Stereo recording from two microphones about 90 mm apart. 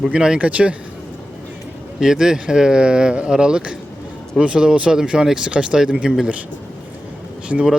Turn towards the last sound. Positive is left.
turn(degrees=-15)  # may be behind; listen again after turning